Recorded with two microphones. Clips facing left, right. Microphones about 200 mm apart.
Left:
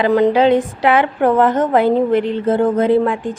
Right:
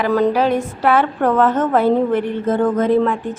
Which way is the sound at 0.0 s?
20° left (ahead or behind).